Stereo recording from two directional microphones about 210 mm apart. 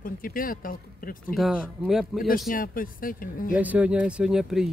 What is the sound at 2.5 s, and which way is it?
Speech, 40° left (ahead or behind).